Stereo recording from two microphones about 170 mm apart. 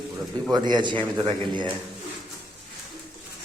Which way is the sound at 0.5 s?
25° right (ahead or behind).